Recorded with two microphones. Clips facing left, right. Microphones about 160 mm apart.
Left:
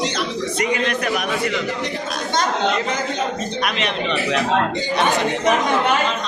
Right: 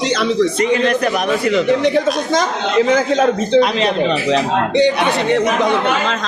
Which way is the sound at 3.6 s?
30° right (ahead or behind).